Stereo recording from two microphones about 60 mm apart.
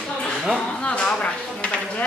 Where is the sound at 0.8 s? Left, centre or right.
Centre.